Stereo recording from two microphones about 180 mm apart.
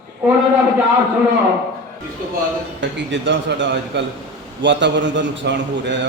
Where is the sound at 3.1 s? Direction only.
90° right.